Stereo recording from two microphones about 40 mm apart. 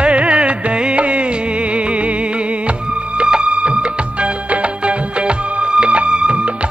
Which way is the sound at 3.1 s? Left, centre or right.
Right.